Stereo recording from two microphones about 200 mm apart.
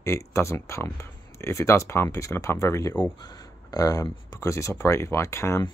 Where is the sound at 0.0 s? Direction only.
15° left (ahead or behind).